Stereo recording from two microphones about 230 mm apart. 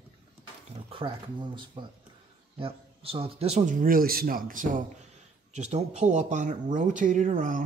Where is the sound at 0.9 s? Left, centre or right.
Right.